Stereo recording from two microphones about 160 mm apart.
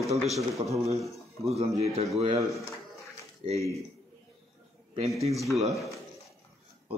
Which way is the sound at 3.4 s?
35° right (ahead or behind).